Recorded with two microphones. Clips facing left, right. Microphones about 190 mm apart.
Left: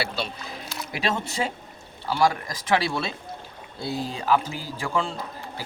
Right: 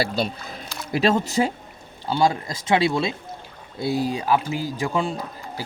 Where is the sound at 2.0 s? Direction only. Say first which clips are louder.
Right 2 dB; 25° right (ahead or behind).